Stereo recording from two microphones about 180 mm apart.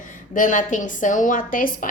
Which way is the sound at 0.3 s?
45° left (ahead or behind).